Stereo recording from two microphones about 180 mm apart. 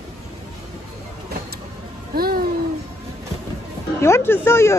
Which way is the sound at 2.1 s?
55° right (ahead or behind).